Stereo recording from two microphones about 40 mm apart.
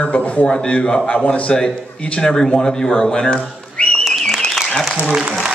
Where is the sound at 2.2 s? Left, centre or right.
Centre.